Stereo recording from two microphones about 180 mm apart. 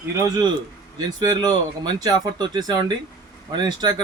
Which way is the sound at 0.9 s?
20° right (ahead or behind).